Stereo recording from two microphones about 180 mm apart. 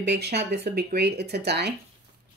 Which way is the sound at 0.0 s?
70° right (ahead or behind).